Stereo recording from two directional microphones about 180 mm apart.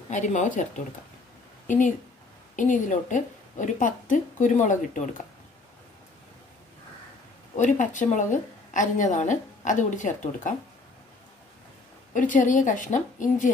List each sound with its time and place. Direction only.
0.1 s a woman's voice: 40° left (ahead or behind)
2.5 s a woman's voice: 45° left (ahead or behind)
7.5 s a woman's voice: 45° left (ahead or behind)
12.1 s a woman's voice: 45° left (ahead or behind)